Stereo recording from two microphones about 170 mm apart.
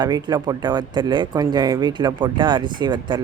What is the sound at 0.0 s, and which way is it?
Speech, 20° right (ahead or behind).